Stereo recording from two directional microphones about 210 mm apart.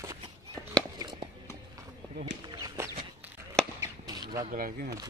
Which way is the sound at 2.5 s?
15° right (ahead or behind).